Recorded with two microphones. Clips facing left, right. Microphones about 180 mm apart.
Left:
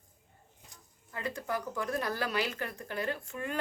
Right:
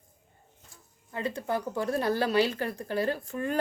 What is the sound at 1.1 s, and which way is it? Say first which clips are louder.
Speech: right 5 dB; 25° right (ahead or behind).